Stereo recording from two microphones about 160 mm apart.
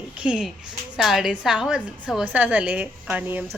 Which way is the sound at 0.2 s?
5° right (ahead or behind).